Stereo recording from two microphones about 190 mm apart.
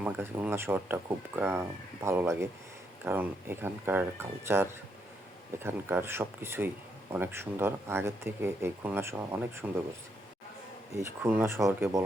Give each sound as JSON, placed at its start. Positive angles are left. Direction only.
{"t": 0.0, "sound": "speech", "side_deg": -10}
{"t": 10.9, "sound": "speech", "side_deg": -10}